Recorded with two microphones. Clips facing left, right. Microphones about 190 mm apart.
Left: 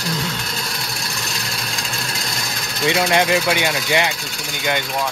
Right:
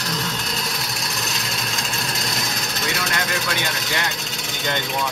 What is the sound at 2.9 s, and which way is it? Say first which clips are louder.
Speech: left 11 dB; 90° left.